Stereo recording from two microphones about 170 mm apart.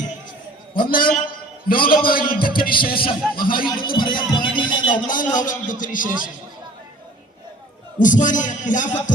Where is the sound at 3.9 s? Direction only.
30° left (ahead or behind).